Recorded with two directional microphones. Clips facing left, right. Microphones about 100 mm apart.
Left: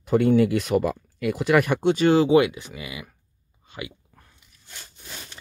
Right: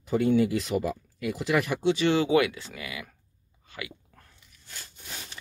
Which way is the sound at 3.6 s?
20° left (ahead or behind).